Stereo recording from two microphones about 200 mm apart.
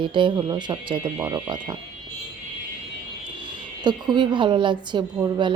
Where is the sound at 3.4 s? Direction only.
20° right (ahead or behind).